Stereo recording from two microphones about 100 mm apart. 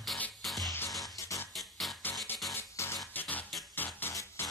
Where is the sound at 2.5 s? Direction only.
25° left (ahead or behind).